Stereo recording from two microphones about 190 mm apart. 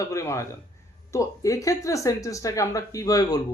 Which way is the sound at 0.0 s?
15° left (ahead or behind).